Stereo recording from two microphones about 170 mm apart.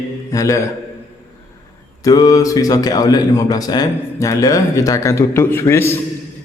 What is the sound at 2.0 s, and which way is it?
Speech, 20° left (ahead or behind).